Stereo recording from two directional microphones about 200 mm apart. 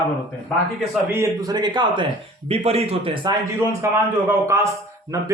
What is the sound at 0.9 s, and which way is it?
A man's voice, 10° right (ahead or behind).